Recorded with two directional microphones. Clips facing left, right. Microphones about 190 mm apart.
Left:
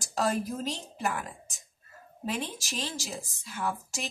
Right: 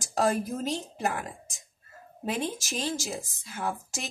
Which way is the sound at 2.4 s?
45° right (ahead or behind).